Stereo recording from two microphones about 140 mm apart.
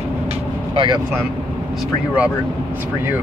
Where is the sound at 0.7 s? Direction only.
30° right (ahead or behind).